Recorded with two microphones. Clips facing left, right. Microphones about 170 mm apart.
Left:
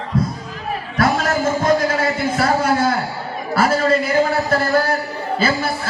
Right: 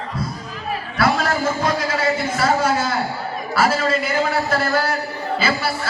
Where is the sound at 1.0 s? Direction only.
45° left (ahead or behind).